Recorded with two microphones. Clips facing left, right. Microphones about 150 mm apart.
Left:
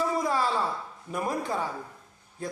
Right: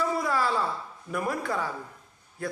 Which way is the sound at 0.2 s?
20° left (ahead or behind).